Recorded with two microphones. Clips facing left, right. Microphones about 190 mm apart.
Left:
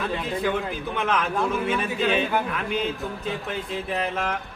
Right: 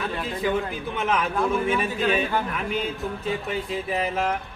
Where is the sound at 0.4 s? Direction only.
Centre (ahead or behind).